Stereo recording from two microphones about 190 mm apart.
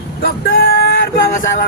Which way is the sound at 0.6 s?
90° left.